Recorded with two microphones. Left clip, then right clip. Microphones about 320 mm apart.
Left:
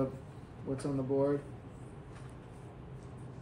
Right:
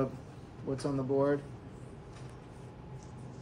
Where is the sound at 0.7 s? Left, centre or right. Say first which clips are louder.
Right 2 dB; centre.